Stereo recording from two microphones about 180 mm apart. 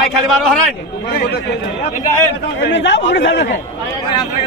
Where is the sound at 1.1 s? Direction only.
65° left (ahead or behind).